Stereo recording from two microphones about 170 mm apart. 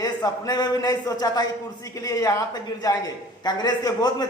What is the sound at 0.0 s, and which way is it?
A man's voice, 25° left (ahead or behind).